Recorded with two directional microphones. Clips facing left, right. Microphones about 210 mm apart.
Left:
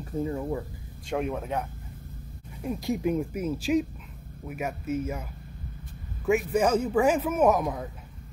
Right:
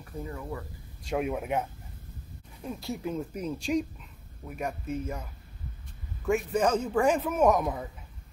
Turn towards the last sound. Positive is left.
turn(degrees=0)  # may be behind; listen again after turning